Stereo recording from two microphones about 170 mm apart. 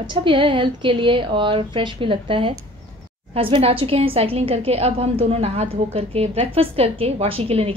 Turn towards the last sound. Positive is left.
turn(degrees=-35)  # may be behind; listen again after turning